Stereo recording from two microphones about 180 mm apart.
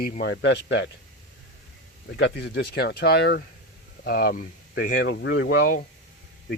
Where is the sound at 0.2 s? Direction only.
70° left (ahead or behind).